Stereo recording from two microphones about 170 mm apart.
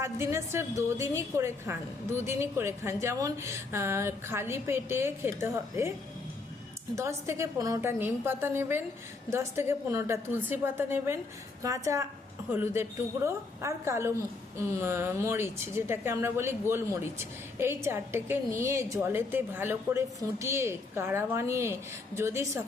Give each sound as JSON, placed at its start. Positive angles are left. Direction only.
{"t": 0.0, "sound": "a woman's voice", "side_deg": -15}
{"t": 6.9, "sound": "a woman's voice", "side_deg": -15}